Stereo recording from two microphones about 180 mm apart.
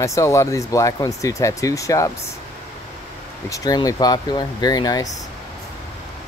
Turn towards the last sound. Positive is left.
turn(degrees=20)  # may be behind; listen again after turning